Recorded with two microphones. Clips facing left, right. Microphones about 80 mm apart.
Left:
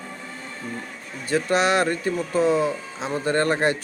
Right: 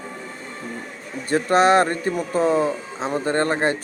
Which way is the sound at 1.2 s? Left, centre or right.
Right.